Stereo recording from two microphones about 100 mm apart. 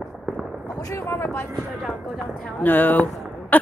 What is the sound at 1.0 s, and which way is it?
Speech, 20° left (ahead or behind).